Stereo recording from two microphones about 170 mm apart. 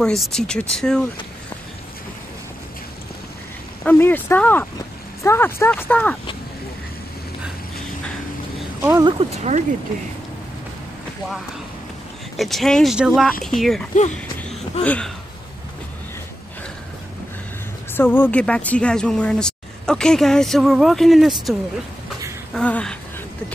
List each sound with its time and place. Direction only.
0.0 s speech: 5° left (ahead or behind)
3.8 s speech: 10° left (ahead or behind)
9.0 s speech: 35° right (ahead or behind)
12.4 s speech: centre (ahead or behind)
14.5 s a sound: 5° left (ahead or behind)
17.9 s speech: 10° left (ahead or behind)